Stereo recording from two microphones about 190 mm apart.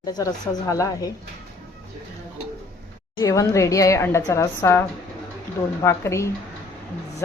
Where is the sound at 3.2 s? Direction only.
15° left (ahead or behind).